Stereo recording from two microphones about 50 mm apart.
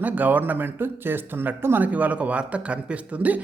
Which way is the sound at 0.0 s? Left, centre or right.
Right.